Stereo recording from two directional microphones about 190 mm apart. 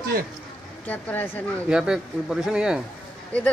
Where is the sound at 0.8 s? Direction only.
10° left (ahead or behind).